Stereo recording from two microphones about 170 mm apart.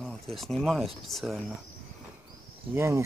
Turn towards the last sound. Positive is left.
turn(degrees=-15)  # may be behind; listen again after turning